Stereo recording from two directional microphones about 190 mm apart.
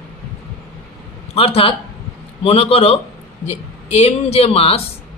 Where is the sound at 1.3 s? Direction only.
30° left (ahead or behind).